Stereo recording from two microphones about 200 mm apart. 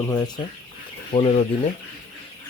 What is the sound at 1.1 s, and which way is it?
Speech, 30° left (ahead or behind).